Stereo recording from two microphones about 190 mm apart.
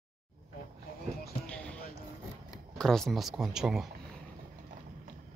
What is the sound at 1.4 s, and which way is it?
Basketball bounce, 5° left (ahead or behind).